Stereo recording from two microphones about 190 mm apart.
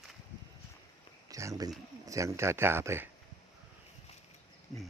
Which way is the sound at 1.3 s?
15° right (ahead or behind).